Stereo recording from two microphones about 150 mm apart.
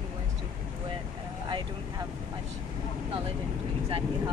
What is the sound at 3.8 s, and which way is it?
Speech, 35° right (ahead or behind).